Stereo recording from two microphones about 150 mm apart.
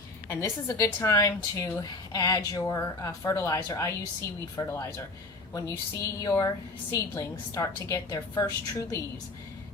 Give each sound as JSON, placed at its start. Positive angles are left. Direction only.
{"t": 0.3, "sound": "a woman's voice", "side_deg": 20}